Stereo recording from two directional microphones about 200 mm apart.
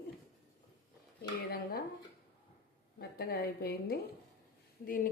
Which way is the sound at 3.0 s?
50° left (ahead or behind).